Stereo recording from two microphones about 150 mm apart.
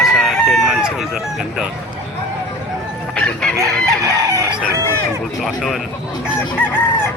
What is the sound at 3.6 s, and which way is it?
Chicken, 20° right (ahead or behind).